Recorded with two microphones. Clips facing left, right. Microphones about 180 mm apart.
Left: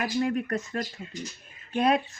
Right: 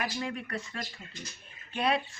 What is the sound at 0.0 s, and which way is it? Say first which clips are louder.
Speech: left 8 dB; 45° left (ahead or behind).